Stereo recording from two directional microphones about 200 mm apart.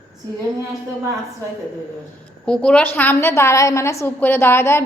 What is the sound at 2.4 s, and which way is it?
A woman's voice, 5° left (ahead or behind).